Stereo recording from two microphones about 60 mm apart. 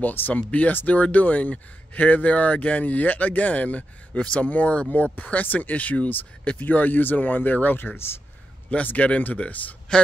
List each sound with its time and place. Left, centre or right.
0.0 s speech: left
8.6 s speech: left